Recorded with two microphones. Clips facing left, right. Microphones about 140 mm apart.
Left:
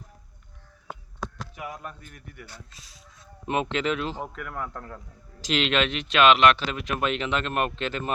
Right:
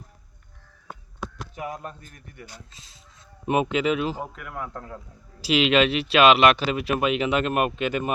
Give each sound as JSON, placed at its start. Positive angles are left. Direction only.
{"t": 1.5, "sound": "a man's voice", "side_deg": -35}
{"t": 3.4, "sound": "speech", "side_deg": -15}